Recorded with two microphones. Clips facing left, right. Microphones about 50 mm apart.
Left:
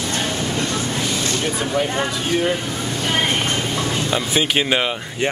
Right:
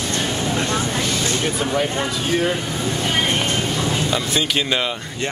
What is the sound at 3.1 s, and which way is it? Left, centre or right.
Vehicle, centre.